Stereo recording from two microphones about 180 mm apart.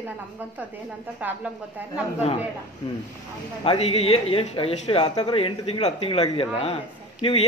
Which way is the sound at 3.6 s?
30° left (ahead or behind).